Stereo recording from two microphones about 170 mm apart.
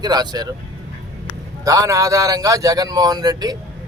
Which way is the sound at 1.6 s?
20° right (ahead or behind).